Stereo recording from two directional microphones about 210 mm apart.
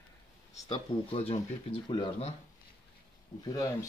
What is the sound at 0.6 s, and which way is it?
Speech, 25° left (ahead or behind).